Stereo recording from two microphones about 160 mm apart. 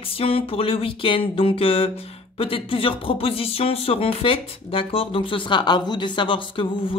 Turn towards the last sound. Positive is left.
turn(degrees=30)  # may be behind; listen again after turning